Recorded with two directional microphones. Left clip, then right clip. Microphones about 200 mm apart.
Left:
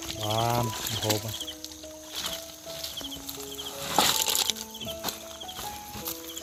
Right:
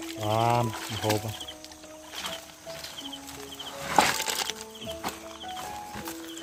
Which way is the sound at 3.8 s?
Centre (ahead or behind).